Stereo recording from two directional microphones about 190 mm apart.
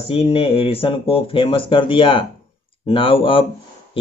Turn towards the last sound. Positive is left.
turn(degrees=30)  # may be behind; listen again after turning